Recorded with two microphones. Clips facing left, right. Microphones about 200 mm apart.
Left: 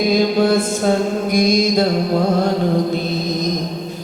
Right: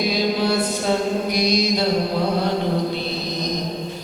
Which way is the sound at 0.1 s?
50° left (ahead or behind).